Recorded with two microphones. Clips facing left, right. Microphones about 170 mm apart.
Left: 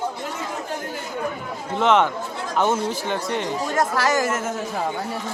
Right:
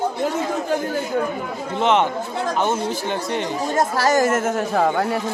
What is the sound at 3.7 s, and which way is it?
Speech, 25° right (ahead or behind).